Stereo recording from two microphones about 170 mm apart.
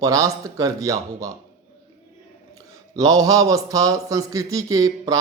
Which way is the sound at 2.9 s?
20° right (ahead or behind).